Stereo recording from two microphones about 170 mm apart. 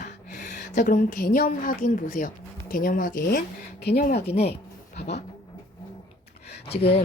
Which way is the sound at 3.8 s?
65° left (ahead or behind).